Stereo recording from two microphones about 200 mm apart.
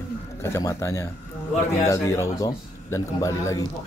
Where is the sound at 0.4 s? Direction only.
15° left (ahead or behind).